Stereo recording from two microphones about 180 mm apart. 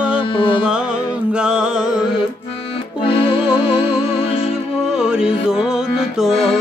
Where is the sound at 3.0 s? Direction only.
30° left (ahead or behind).